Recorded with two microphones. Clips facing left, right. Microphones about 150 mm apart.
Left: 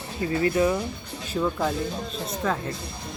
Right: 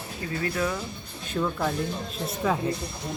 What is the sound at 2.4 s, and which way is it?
Speech, 10° right (ahead or behind).